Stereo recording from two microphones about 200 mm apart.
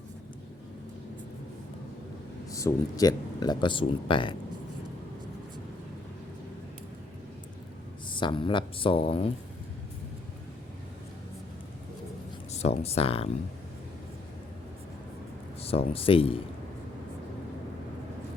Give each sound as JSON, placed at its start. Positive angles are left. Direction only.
{"t": 2.5, "sound": "speech", "side_deg": 15}
{"t": 8.1, "sound": "speech", "side_deg": 25}
{"t": 12.5, "sound": "speech", "side_deg": 35}
{"t": 15.6, "sound": "speech", "side_deg": 30}